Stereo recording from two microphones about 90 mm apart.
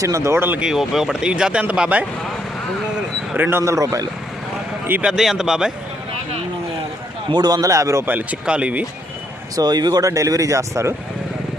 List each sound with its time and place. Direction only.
0.0 s speech: 35° right (ahead or behind)
0.6 s speech: 5° right (ahead or behind)
3.3 s speech: 20° right (ahead or behind)
3.6 s speech: 40° right (ahead or behind)
5.0 s speech: 5° right (ahead or behind)
7.3 s speech: 50° right (ahead or behind); by 8.0 s 35° right (ahead or behind)
8.0 s speech: 20° right (ahead or behind)
9.6 s speech: 50° right (ahead or behind)